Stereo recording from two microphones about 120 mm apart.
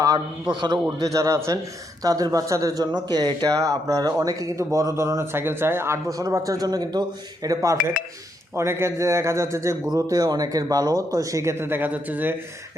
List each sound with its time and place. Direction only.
0.0 s a man's voice: 35° right (ahead or behind); by 12.4 s 15° right (ahead or behind)